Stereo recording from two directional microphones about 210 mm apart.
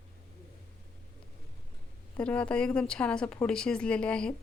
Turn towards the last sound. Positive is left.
turn(degrees=5)  # may be behind; listen again after turning